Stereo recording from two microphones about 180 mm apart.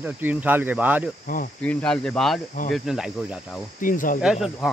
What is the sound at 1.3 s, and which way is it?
Speech, 55° left (ahead or behind).